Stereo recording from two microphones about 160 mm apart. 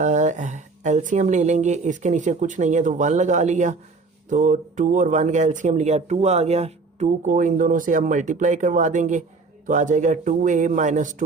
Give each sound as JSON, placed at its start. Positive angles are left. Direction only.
{"t": 0.0, "sound": "speech", "side_deg": -50}